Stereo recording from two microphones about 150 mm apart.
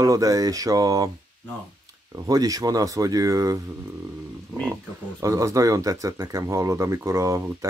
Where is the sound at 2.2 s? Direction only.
25° right (ahead or behind).